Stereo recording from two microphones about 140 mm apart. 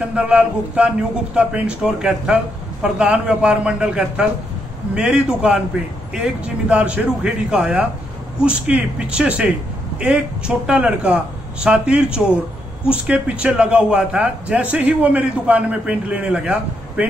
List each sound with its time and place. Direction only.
0.1 s speech: 10° right (ahead or behind)